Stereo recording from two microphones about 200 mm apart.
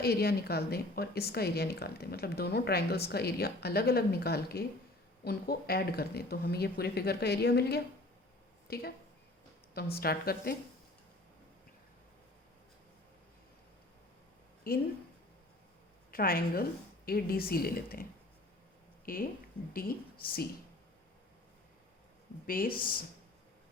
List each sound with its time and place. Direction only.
0.0 s speech: 50° left (ahead or behind)
9.9 s speech: 50° left (ahead or behind)
14.7 s speech: 45° left (ahead or behind)
16.1 s speech: 45° left (ahead or behind)
19.0 s a woman's voice: 45° left (ahead or behind)
22.4 s speech: 45° left (ahead or behind)